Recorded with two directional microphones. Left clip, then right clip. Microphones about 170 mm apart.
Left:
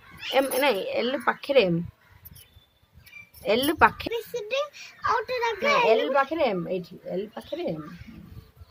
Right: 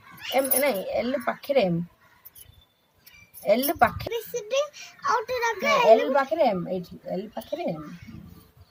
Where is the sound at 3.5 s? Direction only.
30° left (ahead or behind); by 5.8 s 15° left (ahead or behind).